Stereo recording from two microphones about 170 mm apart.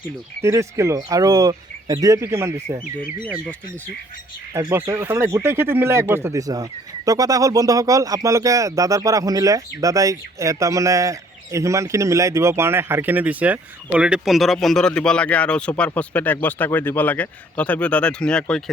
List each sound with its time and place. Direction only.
0.4 s speech: 15° right (ahead or behind)
4.5 s speech: 15° right (ahead or behind); by 18.6 s 5° left (ahead or behind)